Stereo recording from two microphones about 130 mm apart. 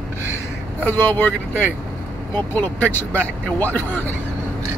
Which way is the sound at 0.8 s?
15° left (ahead or behind).